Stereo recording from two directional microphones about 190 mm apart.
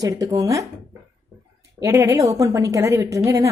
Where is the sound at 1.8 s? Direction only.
15° right (ahead or behind).